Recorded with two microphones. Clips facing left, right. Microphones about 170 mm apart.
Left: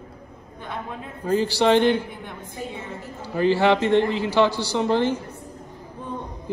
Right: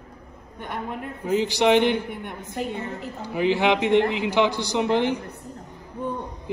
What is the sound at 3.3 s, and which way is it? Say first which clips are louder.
A man's voice: left 2 dB; 15° right (ahead or behind).